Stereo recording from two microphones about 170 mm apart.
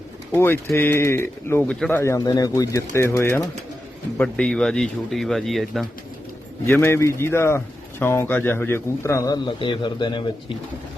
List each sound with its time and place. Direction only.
0.3 s a man's voice: 15° left (ahead or behind)
6.7 s a man's voice: 15° left (ahead or behind)